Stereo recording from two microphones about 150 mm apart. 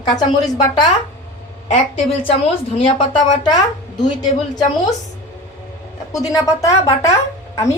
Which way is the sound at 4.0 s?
25° left (ahead or behind).